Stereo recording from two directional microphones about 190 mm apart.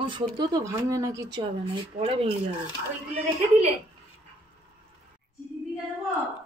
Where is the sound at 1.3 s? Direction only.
25° right (ahead or behind).